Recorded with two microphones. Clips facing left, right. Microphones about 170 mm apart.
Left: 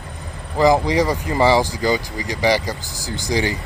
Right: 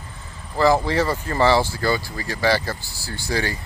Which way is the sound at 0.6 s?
15° left (ahead or behind).